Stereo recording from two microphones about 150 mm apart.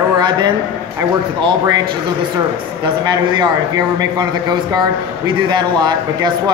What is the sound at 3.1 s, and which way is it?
A man's voice, 30° right (ahead or behind).